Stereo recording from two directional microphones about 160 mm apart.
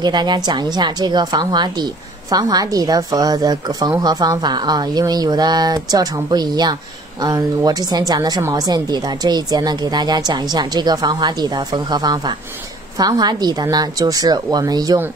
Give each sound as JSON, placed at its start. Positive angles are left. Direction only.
{"t": 0.0, "sound": "speech", "side_deg": -25}